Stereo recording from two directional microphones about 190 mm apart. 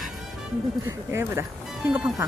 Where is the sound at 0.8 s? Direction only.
15° right (ahead or behind).